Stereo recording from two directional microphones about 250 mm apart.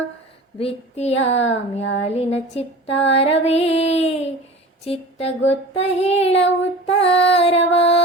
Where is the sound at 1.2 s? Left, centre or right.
Left.